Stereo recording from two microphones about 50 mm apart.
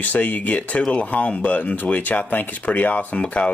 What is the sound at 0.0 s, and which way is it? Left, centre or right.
Speech, left.